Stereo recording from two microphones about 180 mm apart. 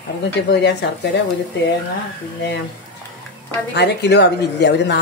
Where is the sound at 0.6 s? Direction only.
70° left (ahead or behind).